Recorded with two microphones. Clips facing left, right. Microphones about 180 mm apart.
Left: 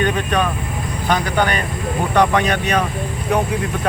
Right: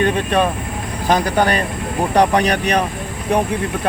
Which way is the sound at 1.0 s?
40° right (ahead or behind).